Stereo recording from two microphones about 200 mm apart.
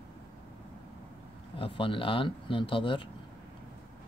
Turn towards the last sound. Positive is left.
turn(degrees=25)  # may be behind; listen again after turning